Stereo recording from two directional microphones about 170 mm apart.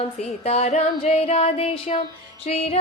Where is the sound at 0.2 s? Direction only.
40° left (ahead or behind).